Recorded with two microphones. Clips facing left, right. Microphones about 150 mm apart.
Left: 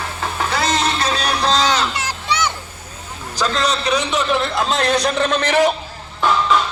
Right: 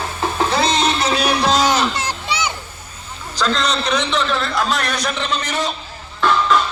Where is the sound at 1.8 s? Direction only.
25° right (ahead or behind).